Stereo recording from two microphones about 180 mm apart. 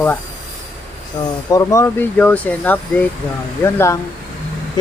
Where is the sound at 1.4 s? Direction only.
20° left (ahead or behind).